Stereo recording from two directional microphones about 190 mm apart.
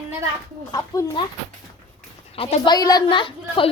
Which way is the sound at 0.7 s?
15° left (ahead or behind).